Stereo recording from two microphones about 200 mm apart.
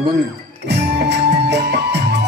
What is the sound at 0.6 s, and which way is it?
Music, 60° right (ahead or behind).